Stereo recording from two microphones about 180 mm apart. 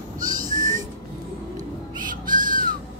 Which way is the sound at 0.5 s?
45° right (ahead or behind).